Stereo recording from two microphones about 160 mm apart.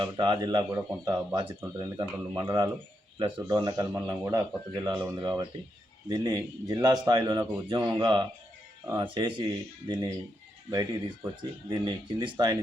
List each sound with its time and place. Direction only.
0.0 s speech: 25° right (ahead or behind)